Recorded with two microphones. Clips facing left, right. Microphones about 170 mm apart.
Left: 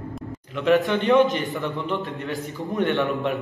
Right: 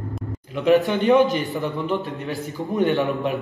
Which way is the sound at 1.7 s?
Centre (ahead or behind).